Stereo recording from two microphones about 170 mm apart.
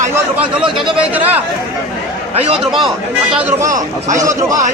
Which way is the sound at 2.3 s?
35° right (ahead or behind).